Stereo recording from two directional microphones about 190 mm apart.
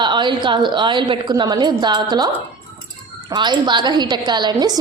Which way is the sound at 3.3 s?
25° right (ahead or behind).